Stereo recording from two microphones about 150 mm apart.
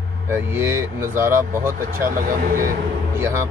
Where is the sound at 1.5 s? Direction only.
70° right (ahead or behind).